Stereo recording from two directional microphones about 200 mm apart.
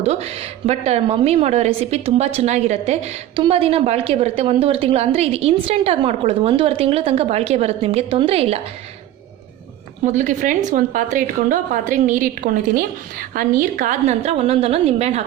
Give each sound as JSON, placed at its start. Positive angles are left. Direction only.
{"t": 0.0, "sound": "a woman's voice", "side_deg": -30}
{"t": 10.0, "sound": "a woman's voice", "side_deg": -40}